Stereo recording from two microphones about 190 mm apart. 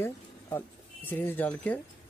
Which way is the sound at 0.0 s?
10° left (ahead or behind).